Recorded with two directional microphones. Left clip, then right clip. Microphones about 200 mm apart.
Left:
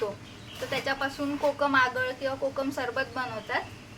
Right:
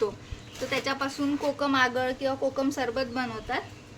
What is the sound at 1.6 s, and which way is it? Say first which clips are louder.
A woman's voice: even; 50° right (ahead or behind).